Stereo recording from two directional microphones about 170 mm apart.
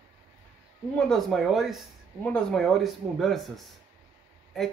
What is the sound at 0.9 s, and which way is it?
Speech, 5° left (ahead or behind).